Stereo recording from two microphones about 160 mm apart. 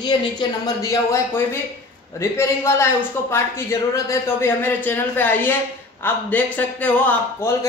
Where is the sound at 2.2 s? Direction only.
15° left (ahead or behind).